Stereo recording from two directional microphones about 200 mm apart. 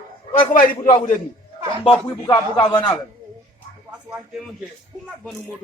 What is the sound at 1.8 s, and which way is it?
Speech, 25° left (ahead or behind).